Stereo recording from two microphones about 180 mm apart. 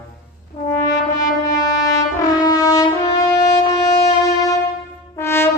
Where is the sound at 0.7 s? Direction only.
20° left (ahead or behind).